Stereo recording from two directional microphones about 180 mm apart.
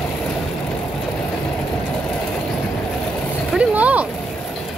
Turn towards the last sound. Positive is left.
turn(degrees=-10)  # may be behind; listen again after turning